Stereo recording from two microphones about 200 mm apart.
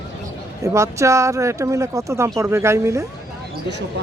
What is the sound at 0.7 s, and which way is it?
Speech, 15° right (ahead or behind).